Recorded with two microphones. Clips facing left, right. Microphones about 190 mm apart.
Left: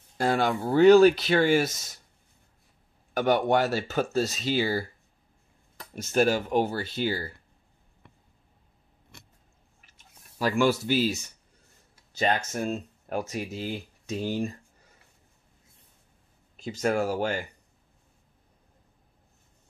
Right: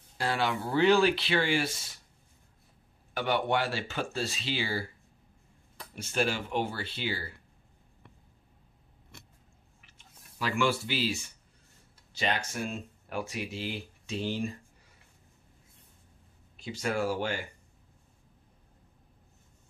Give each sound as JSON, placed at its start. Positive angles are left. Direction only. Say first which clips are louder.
{"t": 0.2, "sound": "speech", "louder": "left 5 dB", "side_deg": 45}
{"t": 3.2, "sound": "speech", "louder": "left 6 dB", "side_deg": 45}
{"t": 5.9, "sound": "speech", "louder": "left 7 dB", "side_deg": 45}
{"t": 9.8, "sound": "a sound", "louder": "left 1 dB", "side_deg": 40}
{"t": 12.4, "sound": "speech", "louder": "left 6 dB", "side_deg": 45}
{"t": 16.5, "sound": "speech", "louder": "left 5 dB", "side_deg": 45}